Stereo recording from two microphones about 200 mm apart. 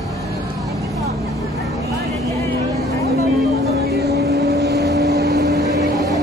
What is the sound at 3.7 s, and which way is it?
Vehicle, 55° right (ahead or behind).